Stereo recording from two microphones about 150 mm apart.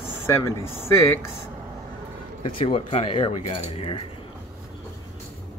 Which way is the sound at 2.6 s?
40° left (ahead or behind).